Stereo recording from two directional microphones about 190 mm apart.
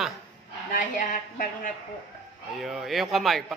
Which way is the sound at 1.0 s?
45° left (ahead or behind).